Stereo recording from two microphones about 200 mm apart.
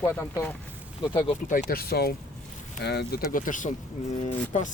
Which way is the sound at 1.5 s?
45° left (ahead or behind).